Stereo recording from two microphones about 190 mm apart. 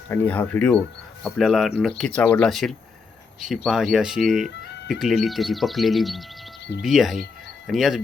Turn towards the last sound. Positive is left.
turn(degrees=0)  # may be behind; listen again after turning